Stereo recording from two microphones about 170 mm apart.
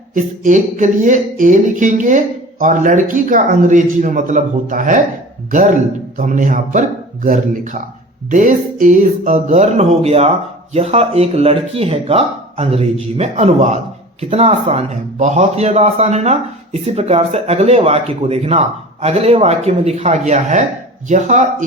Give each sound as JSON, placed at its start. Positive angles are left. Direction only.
{"t": 0.1, "sound": "speech", "side_deg": -50}
{"t": 6.1, "sound": "speech", "side_deg": -45}